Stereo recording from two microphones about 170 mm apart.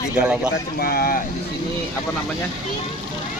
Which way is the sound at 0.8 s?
60° left (ahead or behind).